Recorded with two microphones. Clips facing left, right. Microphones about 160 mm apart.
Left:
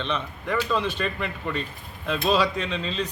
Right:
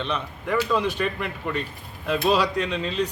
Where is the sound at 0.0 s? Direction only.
10° right (ahead or behind).